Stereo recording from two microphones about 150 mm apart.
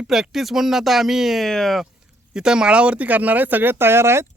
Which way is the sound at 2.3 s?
5° right (ahead or behind).